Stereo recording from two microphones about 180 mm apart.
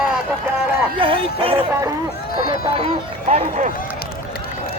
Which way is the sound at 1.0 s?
30° right (ahead or behind).